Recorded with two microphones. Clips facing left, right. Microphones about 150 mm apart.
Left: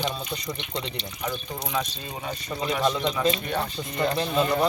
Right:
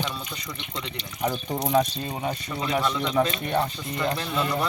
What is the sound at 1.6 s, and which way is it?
Speech, 40° right (ahead or behind).